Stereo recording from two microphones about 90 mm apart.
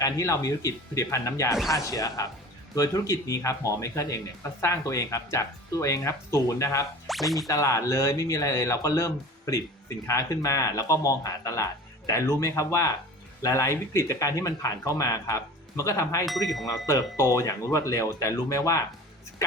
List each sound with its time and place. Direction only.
0.0 s speech: 35° left (ahead or behind)
7.1 s speech: centre (ahead or behind)
7.4 s speech: 35° left (ahead or behind)